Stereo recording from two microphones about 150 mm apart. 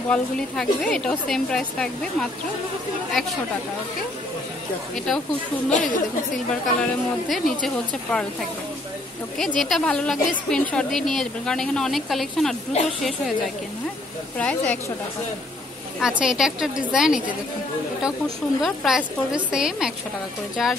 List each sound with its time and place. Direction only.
0.1 s a woman's voice: 5° left (ahead or behind)
4.9 s a woman's voice: centre (ahead or behind)
5.7 s a woman's voice: 60° left (ahead or behind)
6.3 s a woman's voice: centre (ahead or behind)
9.6 s a woman's voice: centre (ahead or behind)
14.4 s speech: 10° left (ahead or behind)
16.0 s a woman's voice: 5° right (ahead or behind)